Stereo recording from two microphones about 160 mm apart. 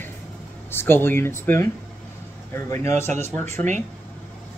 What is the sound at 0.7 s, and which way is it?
Speech, 15° left (ahead or behind).